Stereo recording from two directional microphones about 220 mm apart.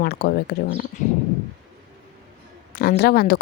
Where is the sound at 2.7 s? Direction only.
45° left (ahead or behind).